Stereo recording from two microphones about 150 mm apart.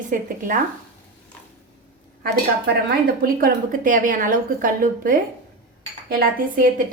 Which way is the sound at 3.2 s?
70° right (ahead or behind).